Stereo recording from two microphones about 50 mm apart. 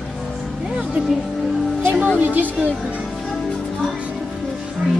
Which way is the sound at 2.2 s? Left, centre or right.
Right.